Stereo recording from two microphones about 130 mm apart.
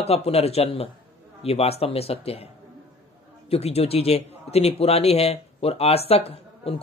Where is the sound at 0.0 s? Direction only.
50° left (ahead or behind).